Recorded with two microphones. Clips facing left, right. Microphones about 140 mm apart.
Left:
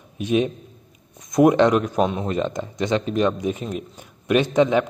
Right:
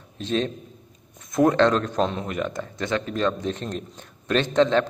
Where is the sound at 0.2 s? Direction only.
15° left (ahead or behind).